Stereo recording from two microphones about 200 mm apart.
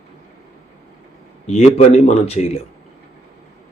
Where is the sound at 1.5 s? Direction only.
35° left (ahead or behind).